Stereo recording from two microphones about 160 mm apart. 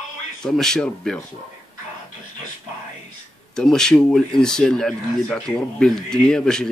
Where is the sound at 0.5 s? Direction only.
5° left (ahead or behind).